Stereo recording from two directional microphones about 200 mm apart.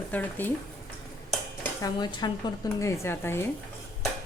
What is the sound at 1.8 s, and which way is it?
Dishes, 20° left (ahead or behind).